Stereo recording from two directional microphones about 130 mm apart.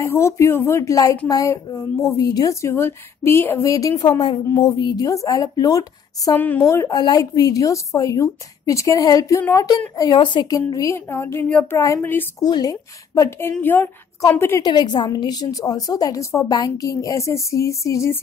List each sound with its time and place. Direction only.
0.0 s speech: 20° left (ahead or behind)
6.3 s speech: 15° left (ahead or behind)
10.1 s speech: 40° left (ahead or behind)
10.7 s speech: 25° left (ahead or behind)
12.4 s speech: 30° left (ahead or behind)
13.6 s speech: 15° left (ahead or behind)
14.6 s speech: 35° left (ahead or behind)